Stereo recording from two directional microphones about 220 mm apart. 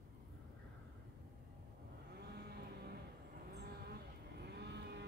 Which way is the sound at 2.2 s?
45° right (ahead or behind).